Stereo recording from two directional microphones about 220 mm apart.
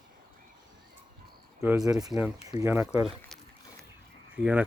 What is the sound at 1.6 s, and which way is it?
Speech, 10° right (ahead or behind).